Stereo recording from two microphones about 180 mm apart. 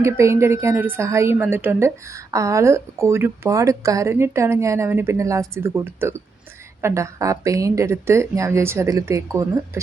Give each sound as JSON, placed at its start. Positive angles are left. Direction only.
{"t": 0.0, "sound": "a woman's voice", "side_deg": -15}